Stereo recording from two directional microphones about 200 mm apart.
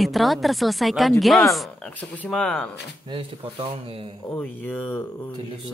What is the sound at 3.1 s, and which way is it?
Speech, 25° right (ahead or behind).